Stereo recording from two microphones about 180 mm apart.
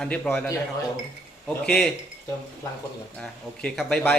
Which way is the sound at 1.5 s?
5° left (ahead or behind).